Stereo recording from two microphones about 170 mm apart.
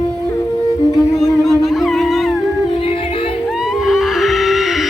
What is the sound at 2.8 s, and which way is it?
Music, 30° left (ahead or behind).